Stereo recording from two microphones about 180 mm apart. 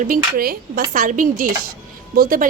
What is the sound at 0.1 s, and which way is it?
A woman's voice, 55° right (ahead or behind).